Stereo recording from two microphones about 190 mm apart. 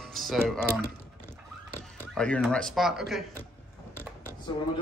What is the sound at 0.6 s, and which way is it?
Typing, 10° left (ahead or behind).